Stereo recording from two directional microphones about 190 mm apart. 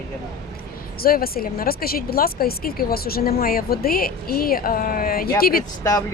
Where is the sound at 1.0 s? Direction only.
50° left (ahead or behind).